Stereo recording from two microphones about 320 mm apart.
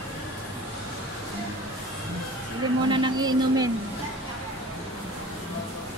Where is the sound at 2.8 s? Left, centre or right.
Centre.